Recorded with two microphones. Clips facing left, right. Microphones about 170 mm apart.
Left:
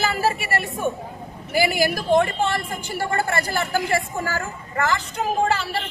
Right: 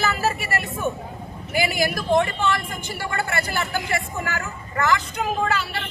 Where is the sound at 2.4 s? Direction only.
35° left (ahead or behind).